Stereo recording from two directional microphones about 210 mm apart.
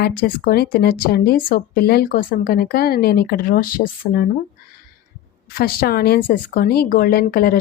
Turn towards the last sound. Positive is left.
turn(degrees=45)  # may be behind; listen again after turning